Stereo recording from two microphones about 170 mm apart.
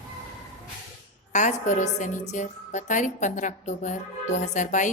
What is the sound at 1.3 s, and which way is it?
A woman's voice, 45° left (ahead or behind).